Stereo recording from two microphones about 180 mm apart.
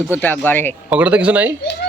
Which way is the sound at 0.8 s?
10° right (ahead or behind).